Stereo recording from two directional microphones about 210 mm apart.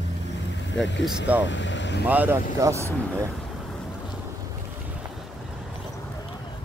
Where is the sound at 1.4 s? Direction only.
60° left (ahead or behind).